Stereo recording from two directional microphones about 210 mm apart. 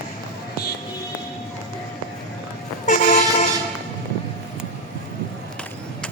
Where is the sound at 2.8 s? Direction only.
35° left (ahead or behind).